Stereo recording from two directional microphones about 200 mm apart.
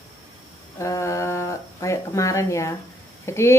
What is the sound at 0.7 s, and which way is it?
Speech, 15° left (ahead or behind).